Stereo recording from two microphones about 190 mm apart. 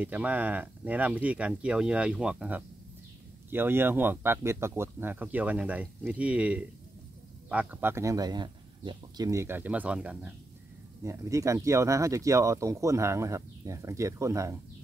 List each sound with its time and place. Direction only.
0.0 s speech: 10° right (ahead or behind)
11.0 s speech: 15° right (ahead or behind)